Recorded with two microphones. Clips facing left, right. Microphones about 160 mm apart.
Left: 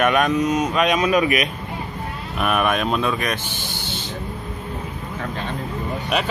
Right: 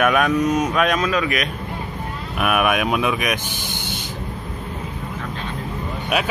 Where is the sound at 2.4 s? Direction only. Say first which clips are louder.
Right 1 dB; 10° right (ahead or behind).